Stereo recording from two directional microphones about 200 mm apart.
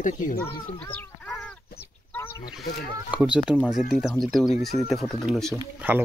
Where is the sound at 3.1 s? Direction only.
5° right (ahead or behind).